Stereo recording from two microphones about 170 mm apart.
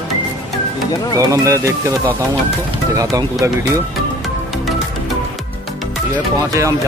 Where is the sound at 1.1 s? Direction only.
20° right (ahead or behind).